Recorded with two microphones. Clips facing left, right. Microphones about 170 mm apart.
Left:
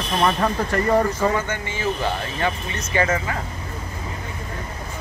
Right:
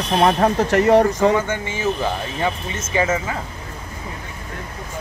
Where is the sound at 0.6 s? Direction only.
80° right.